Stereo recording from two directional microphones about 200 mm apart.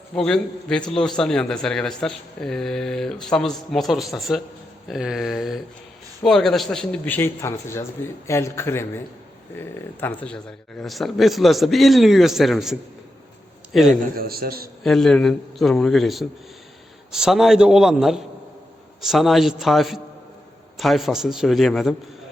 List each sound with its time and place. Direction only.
0.2 s speech: 5° left (ahead or behind)
13.7 s speech: centre (ahead or behind)
14.2 s a man's voice: 50° right (ahead or behind)
14.8 s speech: centre (ahead or behind)